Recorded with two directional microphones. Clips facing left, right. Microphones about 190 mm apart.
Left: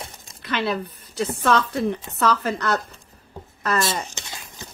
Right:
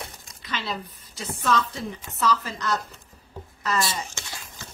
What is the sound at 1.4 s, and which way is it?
A woman's voice, 65° left (ahead or behind).